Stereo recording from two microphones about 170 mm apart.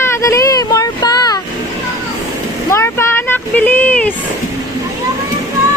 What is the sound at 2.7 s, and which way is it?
Speech, 15° left (ahead or behind).